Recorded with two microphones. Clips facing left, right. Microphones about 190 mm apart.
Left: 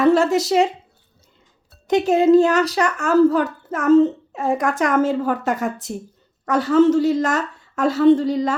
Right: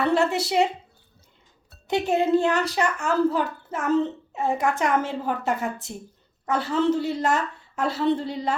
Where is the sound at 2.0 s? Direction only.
90° left.